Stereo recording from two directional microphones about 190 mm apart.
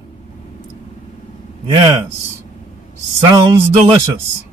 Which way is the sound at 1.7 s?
25° right (ahead or behind).